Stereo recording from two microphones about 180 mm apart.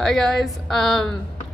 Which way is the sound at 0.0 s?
Centre (ahead or behind).